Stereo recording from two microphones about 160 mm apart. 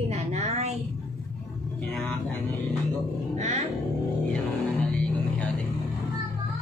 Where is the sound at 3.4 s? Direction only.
45° right (ahead or behind).